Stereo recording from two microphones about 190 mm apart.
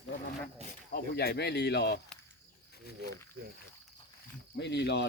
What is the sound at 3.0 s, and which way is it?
Speech, 60° left (ahead or behind).